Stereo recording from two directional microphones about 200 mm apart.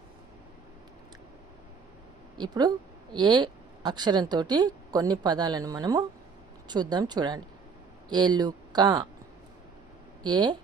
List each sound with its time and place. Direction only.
2.4 s a woman's voice: 20° right (ahead or behind)
10.2 s a woman's voice: 20° right (ahead or behind)